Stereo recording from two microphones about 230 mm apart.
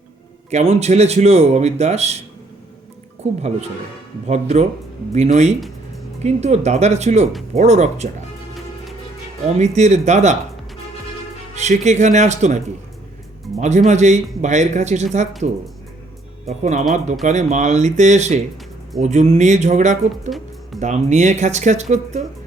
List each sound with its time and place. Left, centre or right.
0.5 s speech: right
3.2 s speech: right
9.6 s speech: right
11.5 s speech: right
13.6 s speech: right
16.5 s speech: right